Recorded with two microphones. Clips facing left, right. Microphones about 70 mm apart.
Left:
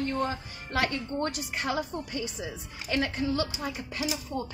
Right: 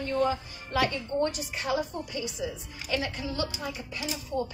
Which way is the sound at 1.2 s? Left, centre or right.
Left.